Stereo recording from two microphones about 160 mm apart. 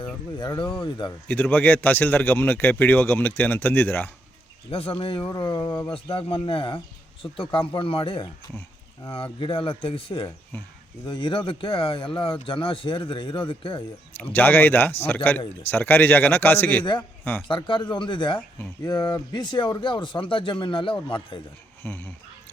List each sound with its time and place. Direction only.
0.3 s speech: 25° left (ahead or behind)
1.3 s a man's voice: 10° left (ahead or behind)
4.7 s speech: 35° left (ahead or behind)
5.9 s speech: 35° left (ahead or behind)
14.1 s a man's voice: 10° left (ahead or behind)
17.5 s speech: 30° left (ahead or behind)
21.8 s a man's voice: 15° left (ahead or behind)